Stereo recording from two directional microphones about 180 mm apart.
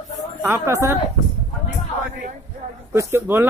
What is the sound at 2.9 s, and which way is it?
Speech, 15° right (ahead or behind).